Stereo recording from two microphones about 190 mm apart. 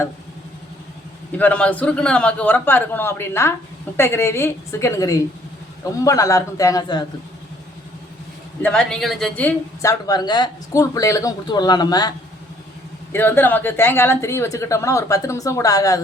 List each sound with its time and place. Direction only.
1.4 s a woman's voice: 5° left (ahead or behind)
8.6 s a woman's voice: 5° left (ahead or behind)
10.1 s a man's voice: 20° left (ahead or behind)
13.1 s a woman's voice: 10° left (ahead or behind)